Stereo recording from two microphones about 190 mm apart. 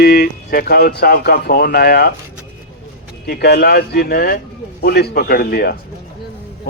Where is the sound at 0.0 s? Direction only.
55° left (ahead or behind).